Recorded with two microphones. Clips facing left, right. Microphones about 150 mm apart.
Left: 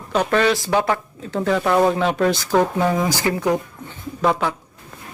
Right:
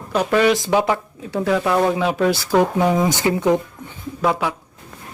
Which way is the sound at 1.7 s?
5° left (ahead or behind).